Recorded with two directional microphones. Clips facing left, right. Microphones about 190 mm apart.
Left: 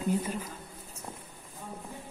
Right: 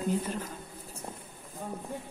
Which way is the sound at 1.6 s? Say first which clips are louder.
Right 5 dB; 45° right (ahead or behind).